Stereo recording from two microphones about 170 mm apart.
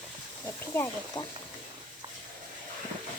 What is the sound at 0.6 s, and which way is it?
Speech, 15° left (ahead or behind).